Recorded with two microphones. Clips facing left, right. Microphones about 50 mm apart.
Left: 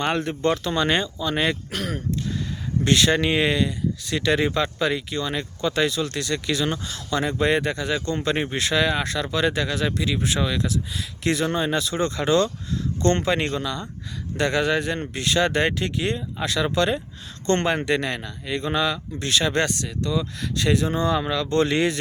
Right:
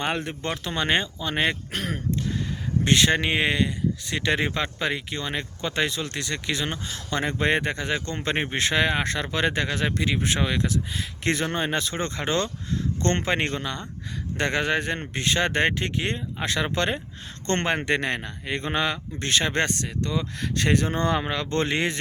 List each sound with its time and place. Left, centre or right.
0.0 s speech: centre; by 20.5 s right
20.6 s speech: right